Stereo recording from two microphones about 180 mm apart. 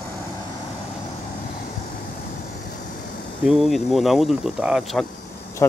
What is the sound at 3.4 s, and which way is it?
Speech, centre (ahead or behind).